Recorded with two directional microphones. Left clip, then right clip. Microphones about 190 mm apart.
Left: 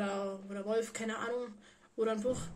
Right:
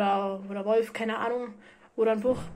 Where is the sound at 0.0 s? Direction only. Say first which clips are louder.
Right 11 dB; 10° left (ahead or behind).